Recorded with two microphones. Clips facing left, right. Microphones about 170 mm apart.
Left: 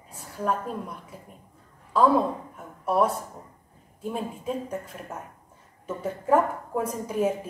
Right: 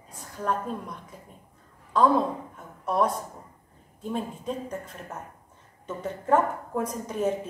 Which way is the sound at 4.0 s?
10° left (ahead or behind).